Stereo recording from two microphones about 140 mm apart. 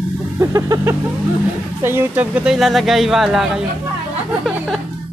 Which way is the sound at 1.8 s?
15° right (ahead or behind).